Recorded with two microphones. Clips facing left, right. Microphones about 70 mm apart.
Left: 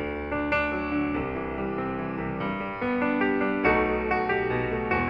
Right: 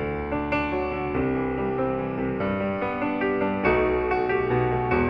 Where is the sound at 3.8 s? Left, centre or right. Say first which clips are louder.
Right 2 dB; left.